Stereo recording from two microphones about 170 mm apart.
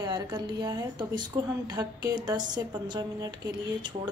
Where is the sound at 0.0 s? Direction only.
25° right (ahead or behind).